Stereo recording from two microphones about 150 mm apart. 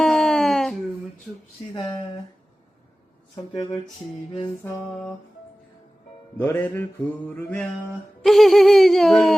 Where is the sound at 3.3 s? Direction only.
30° left (ahead or behind).